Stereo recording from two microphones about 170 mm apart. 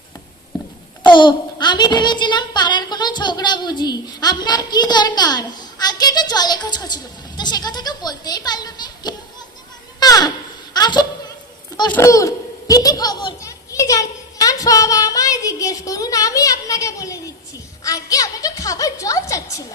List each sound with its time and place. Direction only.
1.0 s a child's voice: 25° left (ahead or behind)
10.0 s a sound: 25° left (ahead or behind)
17.8 s a woman's voice: 20° left (ahead or behind)